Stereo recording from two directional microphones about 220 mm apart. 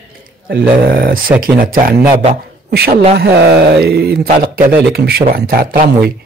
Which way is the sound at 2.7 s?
45° right (ahead or behind).